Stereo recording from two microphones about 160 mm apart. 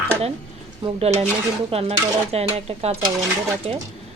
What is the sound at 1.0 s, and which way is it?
Speech, 40° right (ahead or behind).